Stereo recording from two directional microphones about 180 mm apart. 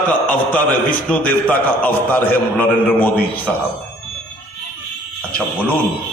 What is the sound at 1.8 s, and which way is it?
A man's voice, 10° left (ahead or behind).